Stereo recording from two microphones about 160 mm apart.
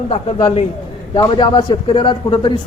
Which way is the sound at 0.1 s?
35° left (ahead or behind).